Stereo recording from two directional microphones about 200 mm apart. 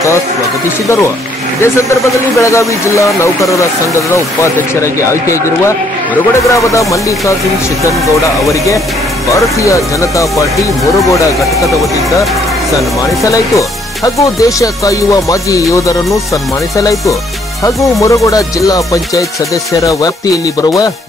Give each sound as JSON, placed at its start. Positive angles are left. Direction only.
{"t": 1.6, "sound": "speech", "side_deg": 15}
{"t": 6.5, "sound": "speech", "side_deg": 15}
{"t": 9.6, "sound": "speech", "side_deg": 15}
{"t": 12.7, "sound": "speech", "side_deg": 15}